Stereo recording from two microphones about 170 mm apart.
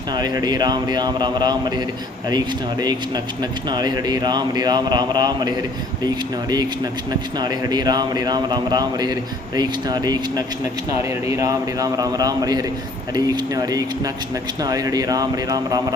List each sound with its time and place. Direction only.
0.1 s a man's voice: 25° right (ahead or behind)
3.7 s a man's voice: 25° right (ahead or behind)
7.3 s a man's voice: 25° right (ahead or behind)